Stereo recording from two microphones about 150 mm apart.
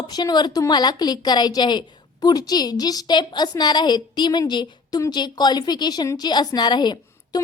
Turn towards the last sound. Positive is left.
turn(degrees=30)  # may be behind; listen again after turning